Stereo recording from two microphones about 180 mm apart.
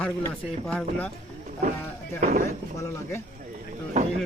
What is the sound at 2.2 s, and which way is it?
Speech, 50° right (ahead or behind).